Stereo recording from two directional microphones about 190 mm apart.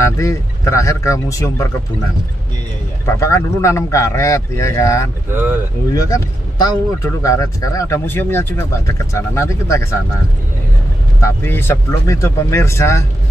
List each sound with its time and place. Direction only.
0.0 s speech: 15° left (ahead or behind)
3.2 s speech: 15° left (ahead or behind)
11.1 s speech: 15° left (ahead or behind)